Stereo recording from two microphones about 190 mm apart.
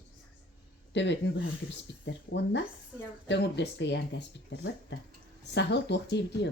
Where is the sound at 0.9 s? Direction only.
65° left (ahead or behind).